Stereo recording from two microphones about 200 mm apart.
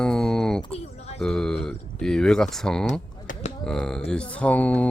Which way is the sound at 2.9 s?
40° left (ahead or behind).